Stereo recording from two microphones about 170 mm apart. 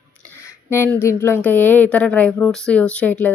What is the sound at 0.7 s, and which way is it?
A woman's voice, 15° left (ahead or behind).